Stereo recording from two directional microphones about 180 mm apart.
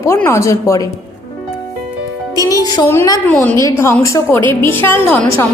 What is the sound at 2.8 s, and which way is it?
A woman's voice, 15° left (ahead or behind).